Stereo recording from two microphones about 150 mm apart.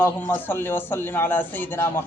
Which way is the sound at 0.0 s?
15° left (ahead or behind).